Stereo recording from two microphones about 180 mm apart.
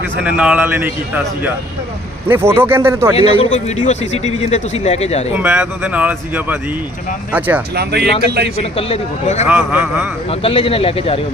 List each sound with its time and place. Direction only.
0.2 s speech: 5° right (ahead or behind)
3.2 s a man's voice: 35° left (ahead or behind)
5.4 s speech: 10° right (ahead or behind)
8.2 s a man's voice: 60° right (ahead or behind)
8.7 s a man's voice: 35° left (ahead or behind)
9.5 s speech: 10° right (ahead or behind)
10.2 s a man's voice: 30° left (ahead or behind)